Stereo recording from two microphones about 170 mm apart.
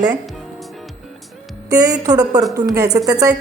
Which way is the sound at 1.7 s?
20° right (ahead or behind).